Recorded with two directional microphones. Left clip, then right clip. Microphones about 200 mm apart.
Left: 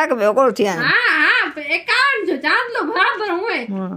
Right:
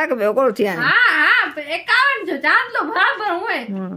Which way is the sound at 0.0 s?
10° right (ahead or behind).